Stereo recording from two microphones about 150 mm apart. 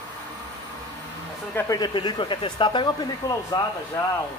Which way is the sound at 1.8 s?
35° left (ahead or behind).